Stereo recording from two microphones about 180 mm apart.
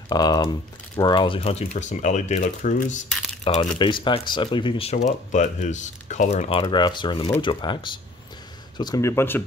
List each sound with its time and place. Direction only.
0.1 s speech: 20° left (ahead or behind); by 3.0 s 45° left (ahead or behind)
3.7 s speech: 25° left (ahead or behind)
4.9 s speech: 45° left (ahead or behind); by 9.4 s 15° left (ahead or behind)